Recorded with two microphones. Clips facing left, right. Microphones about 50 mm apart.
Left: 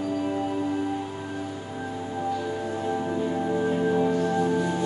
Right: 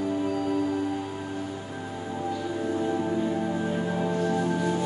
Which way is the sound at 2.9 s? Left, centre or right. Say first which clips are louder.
Even; centre.